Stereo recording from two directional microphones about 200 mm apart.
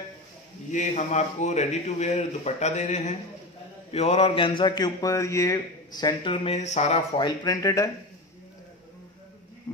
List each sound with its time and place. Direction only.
0.7 s a man's voice: 35° left (ahead or behind)
7.2 s speech: 20° left (ahead or behind)